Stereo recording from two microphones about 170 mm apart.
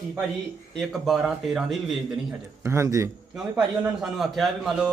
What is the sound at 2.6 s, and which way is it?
Speech, 15° right (ahead or behind).